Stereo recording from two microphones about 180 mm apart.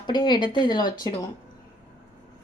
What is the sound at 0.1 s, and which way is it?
Speech, 25° left (ahead or behind).